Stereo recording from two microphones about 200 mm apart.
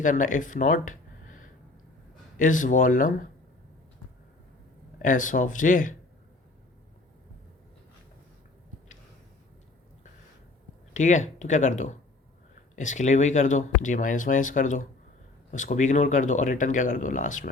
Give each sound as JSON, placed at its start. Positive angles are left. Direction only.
{"t": 0.0, "sound": "speech", "side_deg": 40}
{"t": 5.0, "sound": "speech", "side_deg": 40}
{"t": 10.9, "sound": "speech", "side_deg": 40}